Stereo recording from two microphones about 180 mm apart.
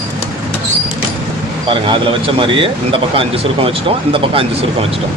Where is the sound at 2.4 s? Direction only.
30° right (ahead or behind).